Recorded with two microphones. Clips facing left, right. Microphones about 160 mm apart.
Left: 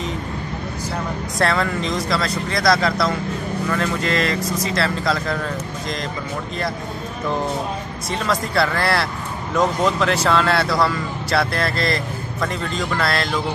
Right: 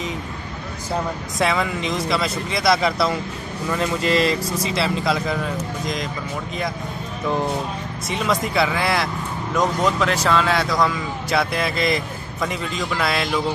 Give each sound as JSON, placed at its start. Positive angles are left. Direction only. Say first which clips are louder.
{"t": 1.4, "sound": "speech", "louder": "left 1 dB", "side_deg": -5}
{"t": 3.7, "sound": "speech", "louder": "right 3 dB", "side_deg": -20}
{"t": 4.7, "sound": "speech", "louder": "right 1 dB", "side_deg": -5}
{"t": 8.1, "sound": "speech", "louder": "even", "side_deg": -5}